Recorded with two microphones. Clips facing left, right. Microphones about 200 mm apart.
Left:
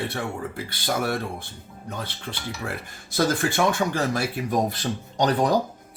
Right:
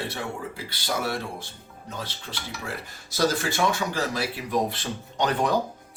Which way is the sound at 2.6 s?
55° left (ahead or behind).